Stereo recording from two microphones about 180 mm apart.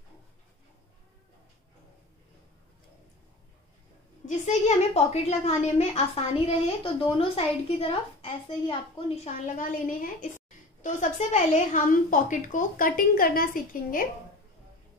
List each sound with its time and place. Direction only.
4.5 s a woman's voice: 40° left (ahead or behind)
9.2 s a woman's voice: 45° left (ahead or behind)